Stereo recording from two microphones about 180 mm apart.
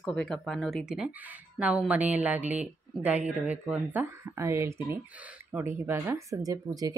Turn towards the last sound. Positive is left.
turn(degrees=-20)  # may be behind; listen again after turning